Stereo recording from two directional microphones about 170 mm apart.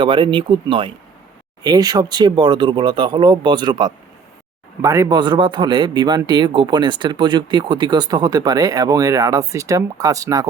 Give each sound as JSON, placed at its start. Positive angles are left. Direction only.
{"t": 0.0, "sound": "speech", "side_deg": -30}